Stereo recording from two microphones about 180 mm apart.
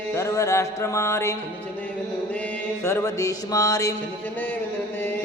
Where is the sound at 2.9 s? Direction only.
15° left (ahead or behind).